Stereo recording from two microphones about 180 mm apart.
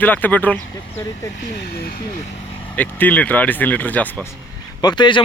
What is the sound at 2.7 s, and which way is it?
A man's voice, 10° left (ahead or behind).